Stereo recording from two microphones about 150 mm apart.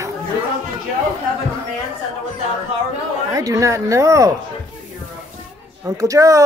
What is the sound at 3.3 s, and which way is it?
Speech, 20° right (ahead or behind).